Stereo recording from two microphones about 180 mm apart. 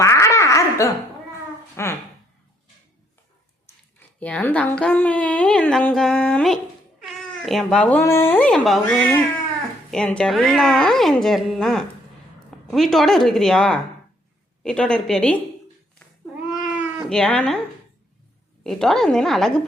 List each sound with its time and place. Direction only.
0.0 s giggle: 15° left (ahead or behind)
1.7 s a woman's voice: 15° left (ahead or behind)
4.2 s a woman's voice: 10° left (ahead or behind)
16.6 s cat: centre (ahead or behind)
18.6 s a woman's voice: centre (ahead or behind)